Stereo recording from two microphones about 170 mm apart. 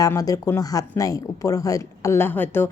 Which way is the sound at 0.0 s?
20° left (ahead or behind).